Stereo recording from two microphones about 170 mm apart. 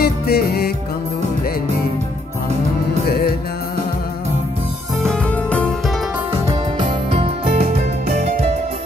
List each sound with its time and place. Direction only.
0.0 s music: 65° left (ahead or behind)
3.1 s music: 65° left (ahead or behind)
5.0 s music: 5° left (ahead or behind)
6.8 s music: 30° right (ahead or behind)